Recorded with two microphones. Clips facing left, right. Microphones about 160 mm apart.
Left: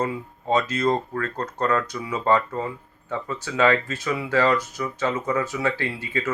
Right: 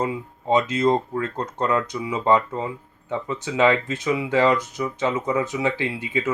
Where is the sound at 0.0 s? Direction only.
20° right (ahead or behind).